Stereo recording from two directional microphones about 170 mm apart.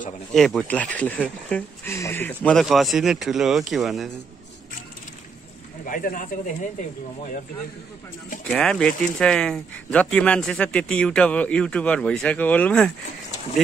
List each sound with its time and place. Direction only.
0.3 s speech: centre (ahead or behind)
5.9 s speech: 55° left (ahead or behind)
8.5 s speech: 5° left (ahead or behind)